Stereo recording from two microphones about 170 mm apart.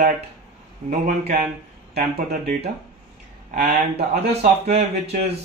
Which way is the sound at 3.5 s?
55° right (ahead or behind).